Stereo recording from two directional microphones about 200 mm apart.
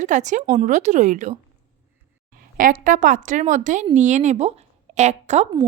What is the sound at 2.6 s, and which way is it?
A woman's voice, 40° right (ahead or behind).